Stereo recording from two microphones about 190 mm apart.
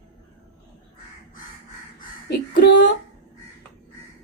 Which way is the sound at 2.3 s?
60° left (ahead or behind).